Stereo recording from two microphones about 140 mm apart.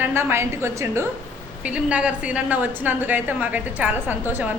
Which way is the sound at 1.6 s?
10° right (ahead or behind).